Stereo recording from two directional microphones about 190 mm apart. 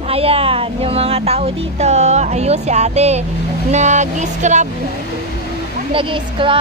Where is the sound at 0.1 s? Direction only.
30° right (ahead or behind).